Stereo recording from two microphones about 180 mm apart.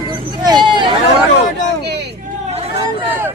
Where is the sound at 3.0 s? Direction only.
10° right (ahead or behind).